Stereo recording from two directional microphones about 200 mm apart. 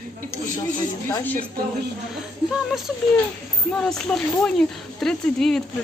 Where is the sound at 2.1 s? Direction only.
Centre (ahead or behind).